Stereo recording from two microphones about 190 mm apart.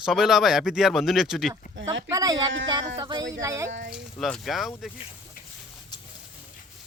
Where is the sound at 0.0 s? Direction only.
Centre (ahead or behind).